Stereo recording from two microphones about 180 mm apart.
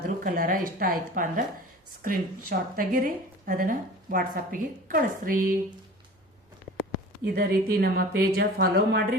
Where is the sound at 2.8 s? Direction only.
50° right (ahead or behind).